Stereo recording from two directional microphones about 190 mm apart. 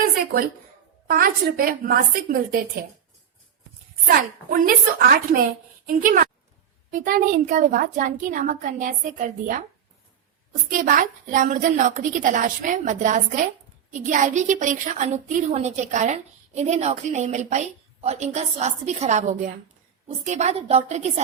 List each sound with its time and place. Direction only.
1.0 s a woman's voice: 50° right (ahead or behind)
4.1 s a woman's voice: 45° right (ahead or behind)
10.7 s a woman's voice: 45° right (ahead or behind)